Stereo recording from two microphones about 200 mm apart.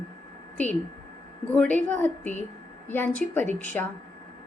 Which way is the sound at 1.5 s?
10° left (ahead or behind).